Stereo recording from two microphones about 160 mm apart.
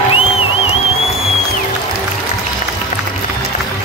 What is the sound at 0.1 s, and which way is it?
Music, 35° left (ahead or behind).